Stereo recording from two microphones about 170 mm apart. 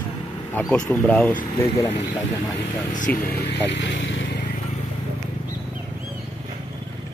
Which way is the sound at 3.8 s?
90° left.